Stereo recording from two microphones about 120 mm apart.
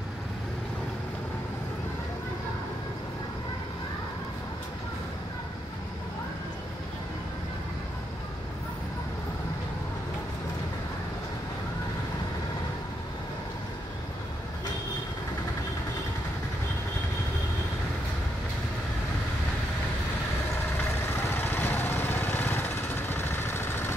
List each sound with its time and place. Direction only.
21.2 s lawn mower: 20° left (ahead or behind)